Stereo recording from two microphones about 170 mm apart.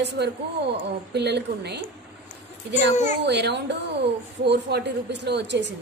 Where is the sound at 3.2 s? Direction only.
85° right.